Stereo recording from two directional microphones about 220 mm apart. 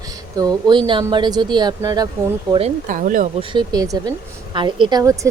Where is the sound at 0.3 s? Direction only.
15° right (ahead or behind).